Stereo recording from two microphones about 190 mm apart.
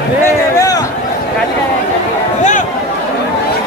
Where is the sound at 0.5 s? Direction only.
20° left (ahead or behind).